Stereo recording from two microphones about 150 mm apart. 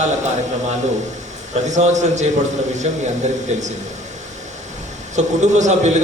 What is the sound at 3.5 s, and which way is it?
Speech, 50° right (ahead or behind).